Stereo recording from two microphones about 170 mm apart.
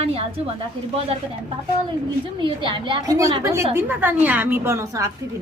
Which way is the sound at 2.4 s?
30° right (ahead or behind).